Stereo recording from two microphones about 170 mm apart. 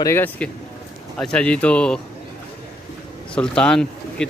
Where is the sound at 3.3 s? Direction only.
5° left (ahead or behind).